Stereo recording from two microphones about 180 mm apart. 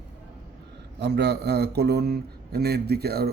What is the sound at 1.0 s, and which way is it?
A man's voice, 70° right (ahead or behind).